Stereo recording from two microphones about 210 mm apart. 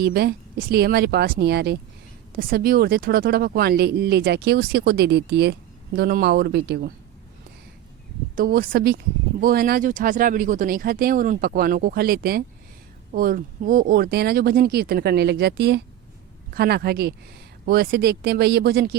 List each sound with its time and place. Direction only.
0.0 s speech: 50° right (ahead or behind)
8.4 s speech: 45° right (ahead or behind)